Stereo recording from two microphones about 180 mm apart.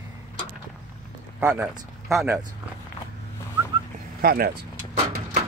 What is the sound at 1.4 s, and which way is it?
Speech, 10° right (ahead or behind).